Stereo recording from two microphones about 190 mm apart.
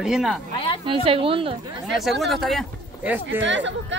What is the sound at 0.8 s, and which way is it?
Speech, 30° right (ahead or behind).